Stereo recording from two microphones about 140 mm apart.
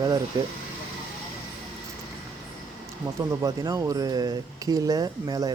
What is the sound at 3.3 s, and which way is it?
Speech, 25° right (ahead or behind).